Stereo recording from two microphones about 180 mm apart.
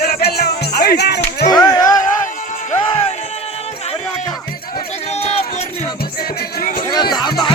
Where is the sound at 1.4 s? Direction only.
20° left (ahead or behind).